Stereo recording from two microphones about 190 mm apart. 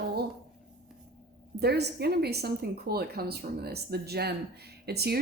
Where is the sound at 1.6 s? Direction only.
60° right (ahead or behind).